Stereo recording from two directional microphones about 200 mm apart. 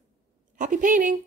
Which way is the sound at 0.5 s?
40° right (ahead or behind).